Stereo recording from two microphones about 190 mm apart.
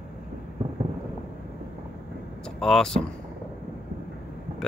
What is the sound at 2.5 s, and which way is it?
Speech, centre (ahead or behind).